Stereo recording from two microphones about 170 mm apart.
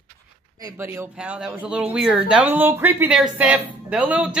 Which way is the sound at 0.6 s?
20° right (ahead or behind).